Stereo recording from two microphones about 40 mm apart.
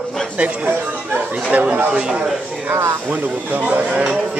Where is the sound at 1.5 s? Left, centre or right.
Right.